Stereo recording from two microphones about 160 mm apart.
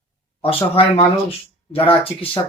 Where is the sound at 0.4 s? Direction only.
35° left (ahead or behind).